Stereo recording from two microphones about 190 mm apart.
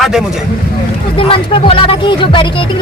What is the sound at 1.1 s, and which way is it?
Speech, 30° left (ahead or behind).